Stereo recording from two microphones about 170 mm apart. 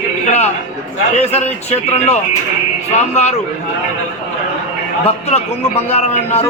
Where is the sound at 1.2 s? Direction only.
40° left (ahead or behind).